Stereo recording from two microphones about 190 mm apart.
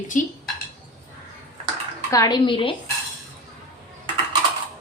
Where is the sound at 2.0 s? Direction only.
20° left (ahead or behind).